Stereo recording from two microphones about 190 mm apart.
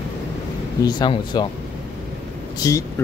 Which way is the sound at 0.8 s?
25° left (ahead or behind).